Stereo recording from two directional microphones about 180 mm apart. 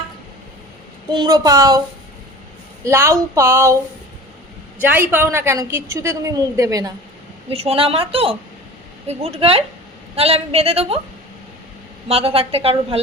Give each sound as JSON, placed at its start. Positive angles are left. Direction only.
{"t": 1.1, "sound": "a woman's voice", "side_deg": -20}
{"t": 2.8, "sound": "a woman's voice", "side_deg": -15}
{"t": 4.8, "sound": "a woman's voice", "side_deg": -10}
{"t": 7.5, "sound": "a woman's voice", "side_deg": -30}
{"t": 12.0, "sound": "a woman's voice", "side_deg": -30}